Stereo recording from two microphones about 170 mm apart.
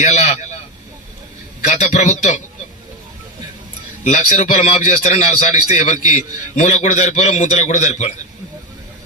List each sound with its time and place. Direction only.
0.0 s a man's voice: 45° left (ahead or behind)
1.6 s a man's voice: 45° left (ahead or behind)
4.0 s a man's voice: 45° left (ahead or behind)